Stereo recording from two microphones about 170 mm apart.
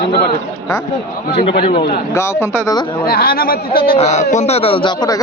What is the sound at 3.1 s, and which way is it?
Speech, 60° left (ahead or behind).